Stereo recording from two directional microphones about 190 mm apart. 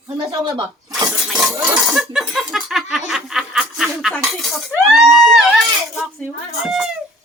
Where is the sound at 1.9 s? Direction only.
Centre (ahead or behind).